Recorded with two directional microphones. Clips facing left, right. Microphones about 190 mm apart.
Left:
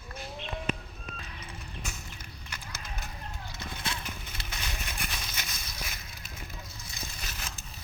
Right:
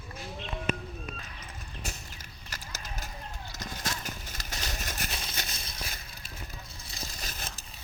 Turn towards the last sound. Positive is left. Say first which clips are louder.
# right 1 dB
turn(degrees=-35)  # may be behind; listen again after turning